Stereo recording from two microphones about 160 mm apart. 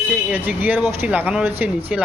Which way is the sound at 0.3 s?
10° right (ahead or behind).